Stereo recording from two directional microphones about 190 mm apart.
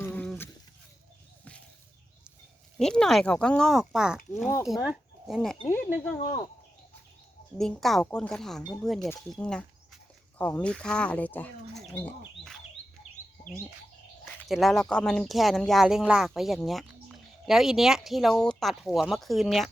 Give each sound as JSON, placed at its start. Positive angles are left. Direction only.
{"t": 0.0, "sound": "a sound", "side_deg": 10}
{"t": 2.7, "sound": "speech", "side_deg": 5}
{"t": 6.0, "sound": "speech", "side_deg": 15}
{"t": 7.6, "sound": "speech", "side_deg": 0}
{"t": 13.4, "sound": "cricket", "side_deg": 5}
{"t": 14.4, "sound": "speech", "side_deg": 0}